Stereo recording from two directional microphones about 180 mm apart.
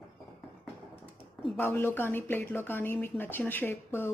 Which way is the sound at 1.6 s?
10° left (ahead or behind).